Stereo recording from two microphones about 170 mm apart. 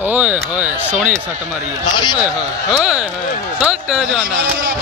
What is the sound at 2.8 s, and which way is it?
Speech, 5° right (ahead or behind).